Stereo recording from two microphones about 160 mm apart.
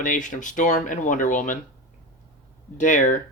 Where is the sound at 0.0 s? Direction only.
50° left (ahead or behind).